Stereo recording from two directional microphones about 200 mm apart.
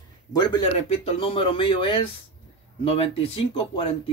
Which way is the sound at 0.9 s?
30° left (ahead or behind).